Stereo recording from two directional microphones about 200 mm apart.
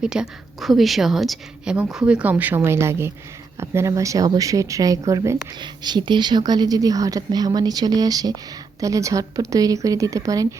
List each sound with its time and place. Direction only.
0.0 s speech: 5° right (ahead or behind)